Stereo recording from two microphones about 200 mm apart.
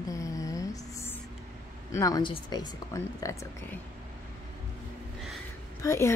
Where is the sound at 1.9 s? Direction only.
15° left (ahead or behind).